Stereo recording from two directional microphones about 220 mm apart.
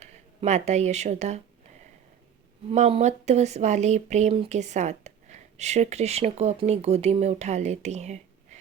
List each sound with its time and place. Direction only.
0.0 s speech: 30° right (ahead or behind)
2.6 s speech: 30° right (ahead or behind)